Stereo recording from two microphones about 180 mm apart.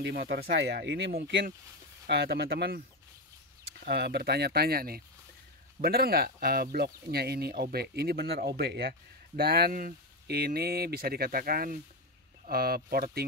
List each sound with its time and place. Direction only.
0.0 s speech: 65° right (ahead or behind)
3.8 s speech: 65° right (ahead or behind)